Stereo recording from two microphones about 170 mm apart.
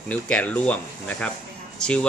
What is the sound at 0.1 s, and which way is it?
Speech, 5° left (ahead or behind).